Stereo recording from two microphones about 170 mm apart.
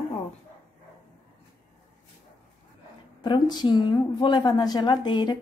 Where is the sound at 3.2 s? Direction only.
25° left (ahead or behind).